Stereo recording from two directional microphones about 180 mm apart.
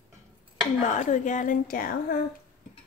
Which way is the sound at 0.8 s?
45° left (ahead or behind).